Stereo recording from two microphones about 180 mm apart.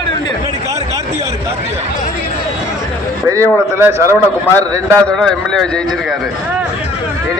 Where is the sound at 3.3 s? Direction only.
15° right (ahead or behind).